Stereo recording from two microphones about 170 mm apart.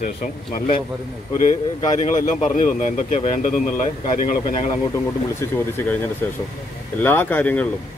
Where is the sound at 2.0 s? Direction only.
45° left (ahead or behind).